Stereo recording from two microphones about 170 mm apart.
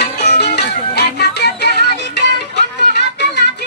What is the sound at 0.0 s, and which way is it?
Music, 80° left.